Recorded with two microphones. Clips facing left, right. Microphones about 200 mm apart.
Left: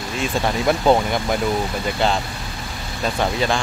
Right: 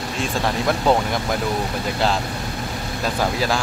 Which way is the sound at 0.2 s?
5° left (ahead or behind).